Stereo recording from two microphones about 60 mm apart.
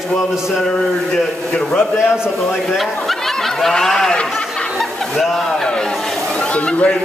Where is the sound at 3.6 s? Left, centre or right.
Centre.